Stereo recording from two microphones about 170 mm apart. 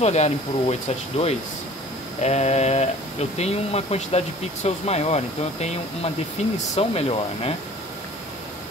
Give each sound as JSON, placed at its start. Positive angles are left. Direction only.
{"t": 0.0, "sound": "speech", "side_deg": 40}